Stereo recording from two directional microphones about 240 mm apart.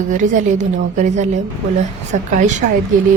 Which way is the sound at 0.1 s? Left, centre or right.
Right.